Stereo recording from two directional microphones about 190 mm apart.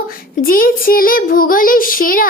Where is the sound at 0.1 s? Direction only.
50° left (ahead or behind).